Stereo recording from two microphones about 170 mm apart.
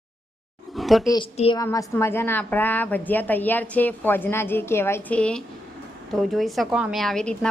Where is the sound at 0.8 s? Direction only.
Centre (ahead or behind).